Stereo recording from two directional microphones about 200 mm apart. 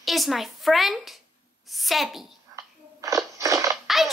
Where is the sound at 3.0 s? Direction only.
15° right (ahead or behind).